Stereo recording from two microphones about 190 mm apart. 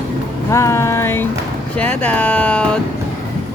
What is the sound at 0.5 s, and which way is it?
Speech, 15° left (ahead or behind).